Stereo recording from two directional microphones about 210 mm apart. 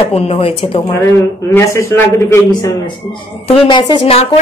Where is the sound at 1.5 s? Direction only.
10° left (ahead or behind).